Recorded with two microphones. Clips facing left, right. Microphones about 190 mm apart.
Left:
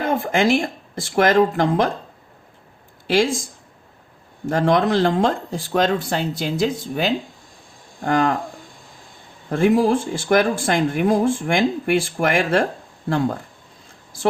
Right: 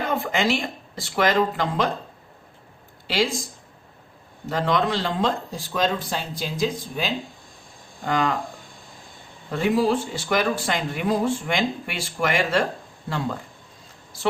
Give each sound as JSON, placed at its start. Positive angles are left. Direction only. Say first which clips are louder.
{"t": 0.0, "sound": "speech", "louder": "left 5 dB", "side_deg": 50}
{"t": 4.4, "sound": "speech", "louder": "left 5 dB", "side_deg": 50}
{"t": 5.7, "sound": "speech", "louder": "left 5 dB", "side_deg": 60}
{"t": 8.0, "sound": "speech", "louder": "left 4 dB", "side_deg": 50}
{"t": 9.5, "sound": "speech", "louder": "left 5 dB", "side_deg": 50}